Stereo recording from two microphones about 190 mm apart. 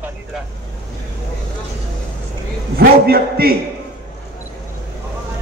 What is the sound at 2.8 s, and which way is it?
Speech, 55° right (ahead or behind).